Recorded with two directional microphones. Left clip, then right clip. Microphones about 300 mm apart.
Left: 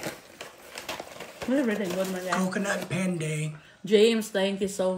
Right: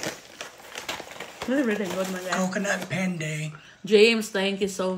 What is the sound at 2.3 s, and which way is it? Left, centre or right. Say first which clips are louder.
Speech: right 3 dB; centre.